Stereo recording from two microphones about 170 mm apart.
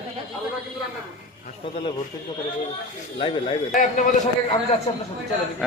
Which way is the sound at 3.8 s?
50° left (ahead or behind).